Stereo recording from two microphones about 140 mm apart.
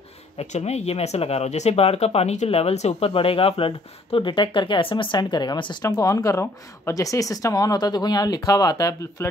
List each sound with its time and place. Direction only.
0.4 s speech: 50° left (ahead or behind); by 9.3 s 25° left (ahead or behind)